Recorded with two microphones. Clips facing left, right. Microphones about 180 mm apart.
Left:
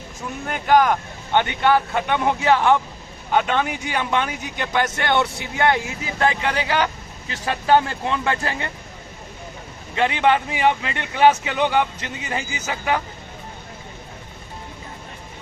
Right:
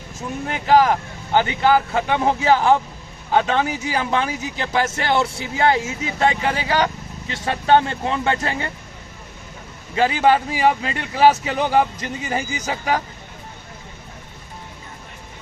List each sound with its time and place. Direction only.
0.4 s speech: 30° right (ahead or behind)
10.0 s speech: 35° right (ahead or behind)